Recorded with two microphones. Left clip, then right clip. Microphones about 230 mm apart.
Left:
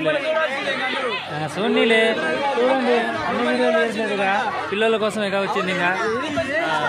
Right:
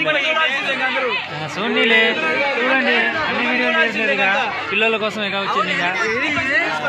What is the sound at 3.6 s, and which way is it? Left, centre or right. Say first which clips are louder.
A man's voice: right 3 dB; left.